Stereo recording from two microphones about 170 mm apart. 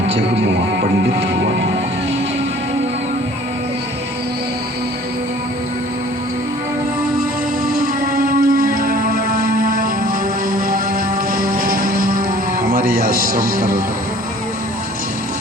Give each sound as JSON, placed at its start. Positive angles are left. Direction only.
{"t": 0.2, "sound": "music", "side_deg": -90}
{"t": 8.1, "sound": "music", "side_deg": -60}